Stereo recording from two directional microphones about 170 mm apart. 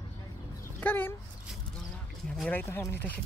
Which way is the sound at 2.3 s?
5° left (ahead or behind).